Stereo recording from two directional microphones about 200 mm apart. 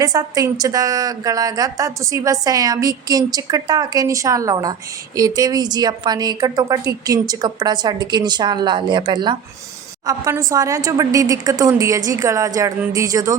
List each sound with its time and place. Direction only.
0.0 s a woman's voice: 20° right (ahead or behind)